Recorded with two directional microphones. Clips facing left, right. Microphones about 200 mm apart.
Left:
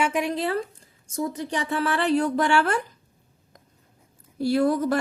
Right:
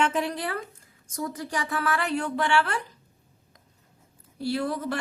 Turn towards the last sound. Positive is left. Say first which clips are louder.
# left 7 dB
turn(degrees=45)  # may be behind; listen again after turning